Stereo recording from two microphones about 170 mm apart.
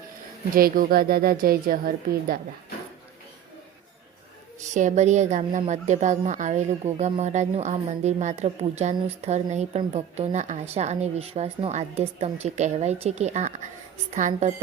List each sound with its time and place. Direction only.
0.5 s a woman's voice: 60° right (ahead or behind)
4.7 s a woman's voice: 45° right (ahead or behind)